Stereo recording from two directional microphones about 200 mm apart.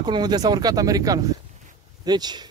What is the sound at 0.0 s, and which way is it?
Speech, 20° right (ahead or behind).